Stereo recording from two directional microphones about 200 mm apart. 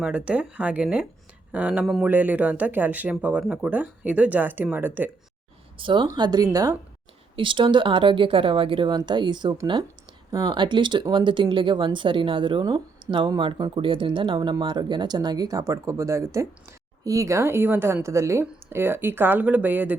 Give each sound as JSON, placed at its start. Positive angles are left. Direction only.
{"t": 0.0, "sound": "speech", "side_deg": -5}
{"t": 5.7, "sound": "speech", "side_deg": -25}